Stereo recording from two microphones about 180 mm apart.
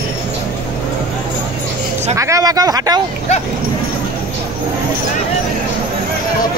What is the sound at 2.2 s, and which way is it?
Speech, 20° right (ahead or behind).